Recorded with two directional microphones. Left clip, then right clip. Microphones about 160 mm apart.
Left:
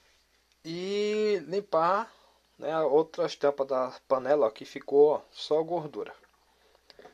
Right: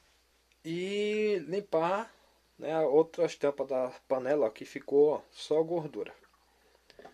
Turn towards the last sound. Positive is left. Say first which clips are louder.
# left 2 dB
turn(degrees=-5)  # may be behind; listen again after turning